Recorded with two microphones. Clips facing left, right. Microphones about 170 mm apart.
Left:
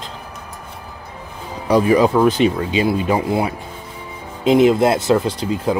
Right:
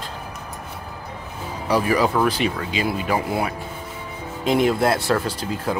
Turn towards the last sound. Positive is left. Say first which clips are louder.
# left 5 dB
turn(degrees=20)  # may be behind; listen again after turning